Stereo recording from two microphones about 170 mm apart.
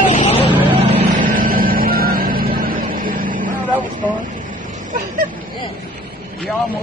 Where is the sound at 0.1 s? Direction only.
45° left (ahead or behind).